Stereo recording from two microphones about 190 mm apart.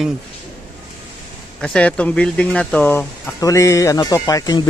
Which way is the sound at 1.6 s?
5° left (ahead or behind).